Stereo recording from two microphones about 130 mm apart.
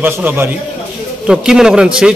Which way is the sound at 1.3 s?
5° right (ahead or behind).